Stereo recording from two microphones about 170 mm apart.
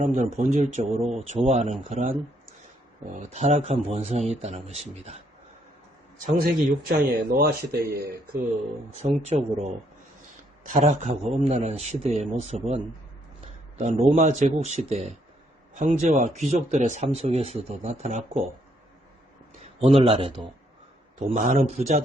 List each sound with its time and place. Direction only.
0.0 s speech: 45° right (ahead or behind)
6.8 s speech: 60° right (ahead or behind)
9.0 s speech: 40° right (ahead or behind)
10.7 s speech: 45° right (ahead or behind)
19.8 s speech: 35° right (ahead or behind)
21.2 s speech: 45° right (ahead or behind)